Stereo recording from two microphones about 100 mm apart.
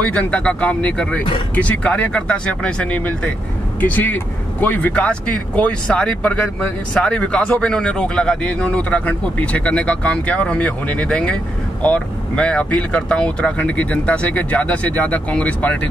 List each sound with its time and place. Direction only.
0.0 s speech: 15° left (ahead or behind)